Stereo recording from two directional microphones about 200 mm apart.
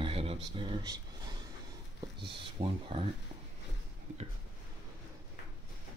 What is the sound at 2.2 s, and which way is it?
Speech, 25° right (ahead or behind).